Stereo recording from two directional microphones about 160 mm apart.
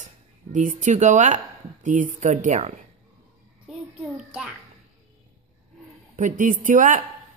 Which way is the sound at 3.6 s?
5° right (ahead or behind).